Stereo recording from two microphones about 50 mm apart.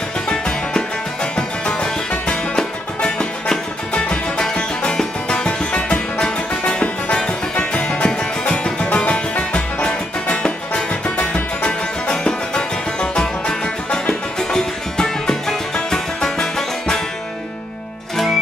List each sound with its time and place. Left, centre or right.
0.3 s music: centre